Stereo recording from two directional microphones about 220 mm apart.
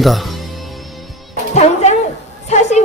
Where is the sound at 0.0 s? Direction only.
Centre (ahead or behind).